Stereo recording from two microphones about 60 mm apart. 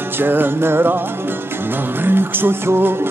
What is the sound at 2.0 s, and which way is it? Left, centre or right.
Music, right.